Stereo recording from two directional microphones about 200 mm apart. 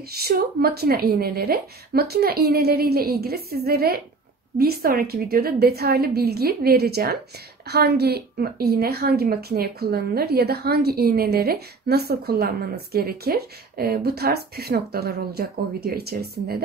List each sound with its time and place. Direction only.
0.1 s a woman's voice: 50° right (ahead or behind)